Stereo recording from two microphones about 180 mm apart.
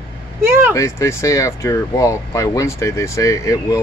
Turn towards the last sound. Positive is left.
turn(degrees=20)  # may be behind; listen again after turning